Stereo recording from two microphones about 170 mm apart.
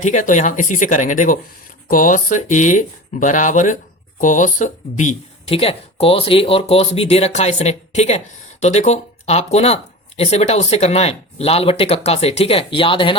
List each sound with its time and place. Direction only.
0.0 s speech: 50° left (ahead or behind); by 13.1 s 30° left (ahead or behind)